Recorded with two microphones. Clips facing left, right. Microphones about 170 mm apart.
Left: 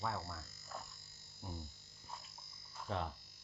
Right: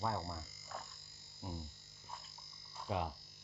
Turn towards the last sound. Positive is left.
turn(degrees=-10)  # may be behind; listen again after turning